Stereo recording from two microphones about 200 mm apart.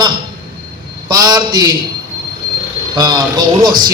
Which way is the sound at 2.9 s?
20° right (ahead or behind).